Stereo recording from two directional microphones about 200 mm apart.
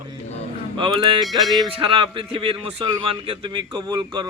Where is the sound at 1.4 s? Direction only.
Centre (ahead or behind).